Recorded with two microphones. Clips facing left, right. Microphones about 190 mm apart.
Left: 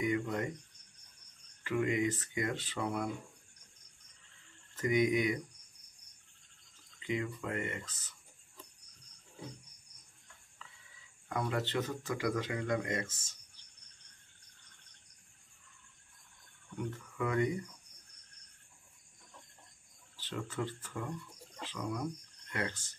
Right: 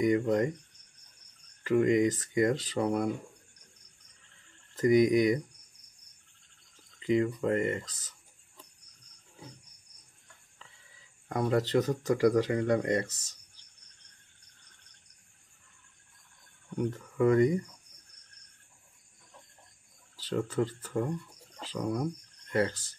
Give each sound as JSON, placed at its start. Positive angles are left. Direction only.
{"t": 0.0, "sound": "speech", "side_deg": -40}
{"t": 1.6, "sound": "speech", "side_deg": -40}
{"t": 4.7, "sound": "speech", "side_deg": -35}
{"t": 7.0, "sound": "speech", "side_deg": -40}
{"t": 11.2, "sound": "speech", "side_deg": -40}
{"t": 16.7, "sound": "speech", "side_deg": -40}
{"t": 20.2, "sound": "speech", "side_deg": -40}